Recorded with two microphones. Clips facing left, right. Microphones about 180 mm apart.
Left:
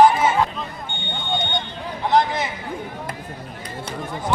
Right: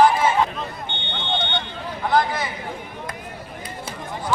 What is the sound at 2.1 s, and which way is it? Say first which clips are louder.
Speech: left 2 dB; 20° left (ahead or behind).